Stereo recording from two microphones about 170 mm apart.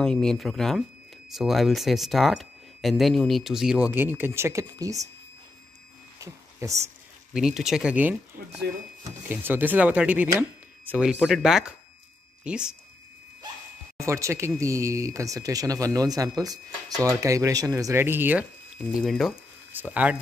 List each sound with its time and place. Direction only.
0.0 s speech: 5° left (ahead or behind); by 5.0 s 20° right (ahead or behind)
6.1 s a sound: 20° right (ahead or behind)
7.3 s speech: 5° right (ahead or behind)
13.9 s speech: 15° right (ahead or behind)
18.9 s speech: centre (ahead or behind)